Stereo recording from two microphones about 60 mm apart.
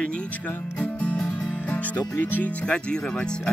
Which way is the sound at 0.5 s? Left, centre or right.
Left.